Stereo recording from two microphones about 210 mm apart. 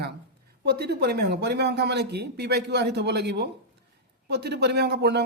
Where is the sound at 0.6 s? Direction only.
50° right (ahead or behind).